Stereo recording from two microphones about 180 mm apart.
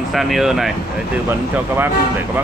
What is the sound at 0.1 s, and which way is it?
Speech, centre (ahead or behind).